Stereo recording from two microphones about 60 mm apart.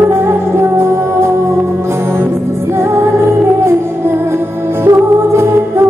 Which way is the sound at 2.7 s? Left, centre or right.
Right.